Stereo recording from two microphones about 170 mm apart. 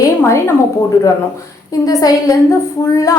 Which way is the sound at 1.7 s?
20° left (ahead or behind).